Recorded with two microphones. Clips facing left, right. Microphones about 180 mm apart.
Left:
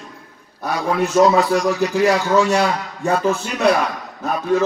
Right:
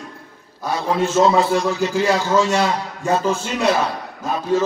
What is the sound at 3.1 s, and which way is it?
Speech, 25° right (ahead or behind).